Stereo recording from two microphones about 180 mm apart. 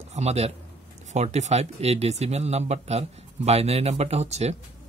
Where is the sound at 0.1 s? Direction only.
35° right (ahead or behind).